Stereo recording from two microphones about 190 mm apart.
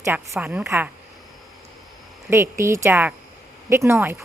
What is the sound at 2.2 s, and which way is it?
Speech, 10° right (ahead or behind).